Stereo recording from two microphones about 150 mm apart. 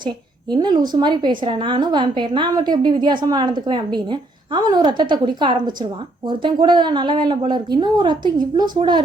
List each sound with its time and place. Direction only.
0.5 s a woman's voice: 30° right (ahead or behind)